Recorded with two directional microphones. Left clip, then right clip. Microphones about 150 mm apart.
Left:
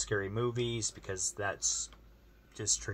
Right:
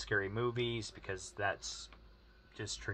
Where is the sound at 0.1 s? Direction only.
10° left (ahead or behind).